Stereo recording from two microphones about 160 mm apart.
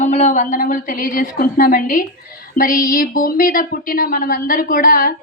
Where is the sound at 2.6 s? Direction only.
60° left (ahead or behind).